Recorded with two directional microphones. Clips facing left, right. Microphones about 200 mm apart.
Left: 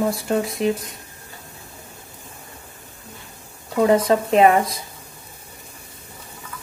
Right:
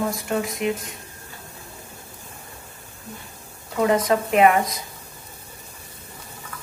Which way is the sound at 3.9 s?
30° left (ahead or behind).